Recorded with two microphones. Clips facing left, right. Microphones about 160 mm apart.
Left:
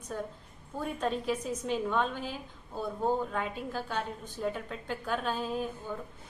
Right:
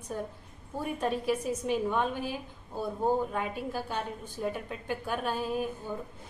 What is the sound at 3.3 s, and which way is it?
A woman's voice, 10° right (ahead or behind).